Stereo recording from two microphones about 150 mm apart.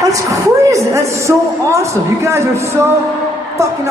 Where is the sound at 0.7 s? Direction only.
20° right (ahead or behind).